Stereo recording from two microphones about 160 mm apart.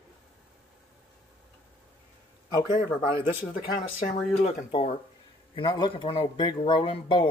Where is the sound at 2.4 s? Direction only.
25° left (ahead or behind).